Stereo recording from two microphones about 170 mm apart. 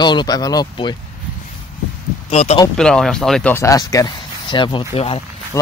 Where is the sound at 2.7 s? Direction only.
5° left (ahead or behind).